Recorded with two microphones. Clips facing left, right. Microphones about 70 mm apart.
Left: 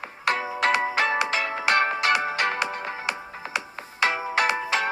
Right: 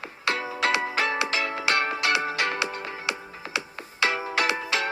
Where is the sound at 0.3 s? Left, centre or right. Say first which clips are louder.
Left 2 dB; left.